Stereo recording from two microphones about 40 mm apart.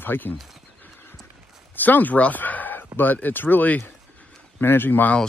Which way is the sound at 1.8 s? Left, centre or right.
Left.